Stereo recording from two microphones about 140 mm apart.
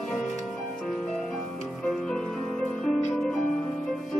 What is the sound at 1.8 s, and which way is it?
Music, 5° left (ahead or behind).